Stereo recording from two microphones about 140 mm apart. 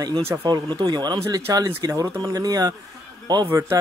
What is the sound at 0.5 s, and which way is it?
A man's voice, 30° right (ahead or behind).